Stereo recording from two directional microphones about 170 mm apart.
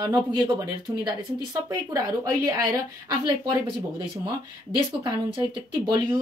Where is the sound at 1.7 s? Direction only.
20° right (ahead or behind).